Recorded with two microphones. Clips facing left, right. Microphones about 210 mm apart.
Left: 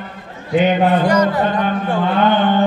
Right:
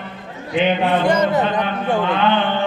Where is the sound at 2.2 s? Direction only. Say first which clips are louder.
Left 3 dB; 45° left (ahead or behind).